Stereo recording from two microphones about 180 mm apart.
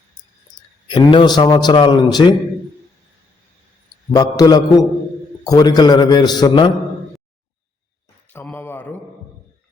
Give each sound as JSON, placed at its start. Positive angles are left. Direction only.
{"t": 0.9, "sound": "a man's voice", "side_deg": 25}
{"t": 4.1, "sound": "a man's voice", "side_deg": 20}
{"t": 8.3, "sound": "speech", "side_deg": 10}